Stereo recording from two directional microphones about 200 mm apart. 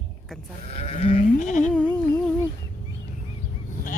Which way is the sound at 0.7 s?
30° left (ahead or behind).